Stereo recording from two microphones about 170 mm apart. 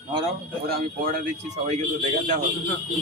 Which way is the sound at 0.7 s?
60° right (ahead or behind).